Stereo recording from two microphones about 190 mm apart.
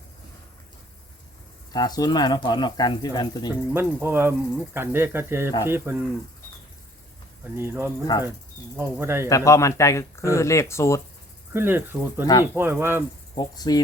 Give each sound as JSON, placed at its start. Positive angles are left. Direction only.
{"t": 1.7, "sound": "speech", "side_deg": 20}
{"t": 3.5, "sound": "speech", "side_deg": -10}
{"t": 7.5, "sound": "speech", "side_deg": -10}
{"t": 9.3, "sound": "speech", "side_deg": 15}
{"t": 11.5, "sound": "speech", "side_deg": -10}
{"t": 12.2, "sound": "speech", "side_deg": 20}
{"t": 12.5, "sound": "speech", "side_deg": -10}
{"t": 13.3, "sound": "speech", "side_deg": 20}